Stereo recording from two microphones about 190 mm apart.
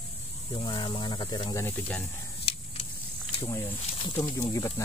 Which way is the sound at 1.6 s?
10° left (ahead or behind).